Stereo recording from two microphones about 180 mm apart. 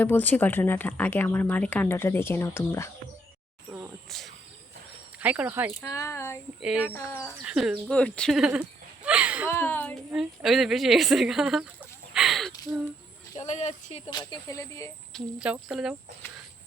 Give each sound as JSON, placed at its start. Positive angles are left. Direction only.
{"t": 0.0, "sound": "speech", "side_deg": 10}
{"t": 4.1, "sound": "speech", "side_deg": 0}
{"t": 5.2, "sound": "speech", "side_deg": -10}
{"t": 5.8, "sound": "speech", "side_deg": 15}
{"t": 6.6, "sound": "speech", "side_deg": -5}
{"t": 6.9, "sound": "speech", "side_deg": 15}
{"t": 7.4, "sound": "speech", "side_deg": -5}
{"t": 9.5, "sound": "speech", "side_deg": 10}
{"t": 10.1, "sound": "speech", "side_deg": 0}
{"t": 13.4, "sound": "speech", "side_deg": 40}
{"t": 14.1, "sound": "speech", "side_deg": 25}
{"t": 15.1, "sound": "speech", "side_deg": -5}